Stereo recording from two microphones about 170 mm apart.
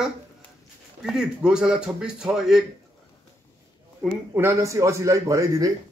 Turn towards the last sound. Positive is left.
turn(degrees=-20)  # may be behind; listen again after turning